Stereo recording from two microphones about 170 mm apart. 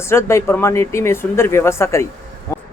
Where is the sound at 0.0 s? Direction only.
15° left (ahead or behind).